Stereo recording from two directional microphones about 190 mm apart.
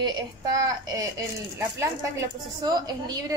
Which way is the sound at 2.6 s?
20° right (ahead or behind).